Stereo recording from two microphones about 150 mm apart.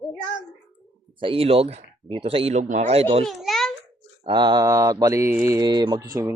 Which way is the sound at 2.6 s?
50° right (ahead or behind).